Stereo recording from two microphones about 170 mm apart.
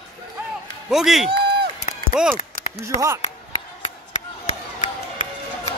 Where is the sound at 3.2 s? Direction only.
40° left (ahead or behind).